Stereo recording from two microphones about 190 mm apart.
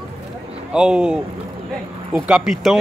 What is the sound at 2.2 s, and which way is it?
Speech, 5° right (ahead or behind).